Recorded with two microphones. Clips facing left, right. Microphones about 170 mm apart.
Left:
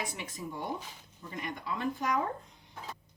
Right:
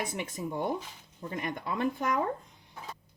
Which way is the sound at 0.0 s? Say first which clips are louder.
Right 5 dB; 55° right (ahead or behind).